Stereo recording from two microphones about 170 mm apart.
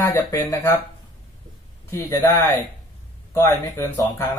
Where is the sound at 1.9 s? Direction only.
10° left (ahead or behind).